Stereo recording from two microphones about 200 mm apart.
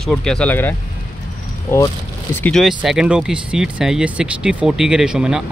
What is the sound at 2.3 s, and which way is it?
Speech, 5° left (ahead or behind).